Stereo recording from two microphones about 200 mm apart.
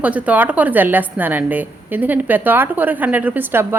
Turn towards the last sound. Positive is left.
turn(degrees=-10)  # may be behind; listen again after turning